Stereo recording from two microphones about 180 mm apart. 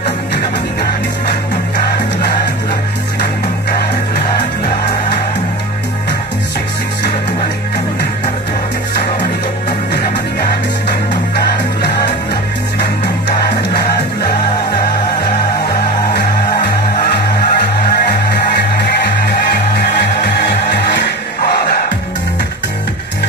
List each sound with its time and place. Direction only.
13.5 s music: 65° left (ahead or behind)
15.6 s music: 65° left (ahead or behind)